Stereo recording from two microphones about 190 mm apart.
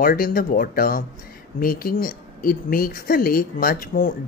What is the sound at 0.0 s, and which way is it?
A woman's voice, 50° left (ahead or behind).